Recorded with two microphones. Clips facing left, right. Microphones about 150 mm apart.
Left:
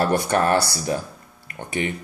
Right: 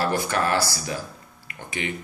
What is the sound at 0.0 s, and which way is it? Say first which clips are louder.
Speech: left 4 dB; 50° left (ahead or behind).